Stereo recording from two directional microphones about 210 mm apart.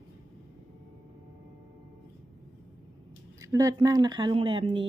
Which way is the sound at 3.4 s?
15° right (ahead or behind).